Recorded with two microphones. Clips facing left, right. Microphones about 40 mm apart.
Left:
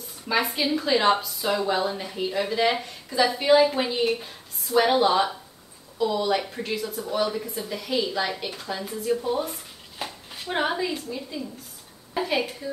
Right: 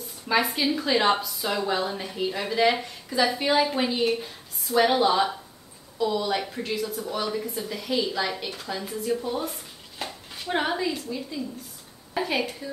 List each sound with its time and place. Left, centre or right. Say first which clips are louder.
0.3 s a woman's voice: even; centre